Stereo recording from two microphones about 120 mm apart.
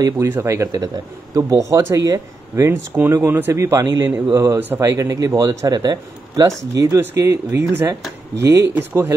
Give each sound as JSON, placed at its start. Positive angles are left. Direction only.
{"t": 0.3, "sound": "speech", "side_deg": -20}